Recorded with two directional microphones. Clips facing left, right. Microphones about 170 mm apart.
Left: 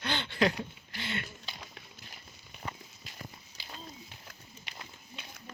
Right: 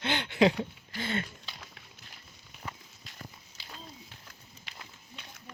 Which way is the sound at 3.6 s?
Centre (ahead or behind).